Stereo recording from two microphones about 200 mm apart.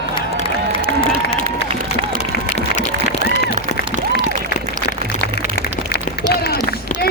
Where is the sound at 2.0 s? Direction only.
55° left (ahead or behind).